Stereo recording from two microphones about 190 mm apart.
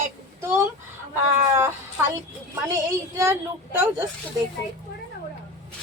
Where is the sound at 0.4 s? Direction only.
15° right (ahead or behind).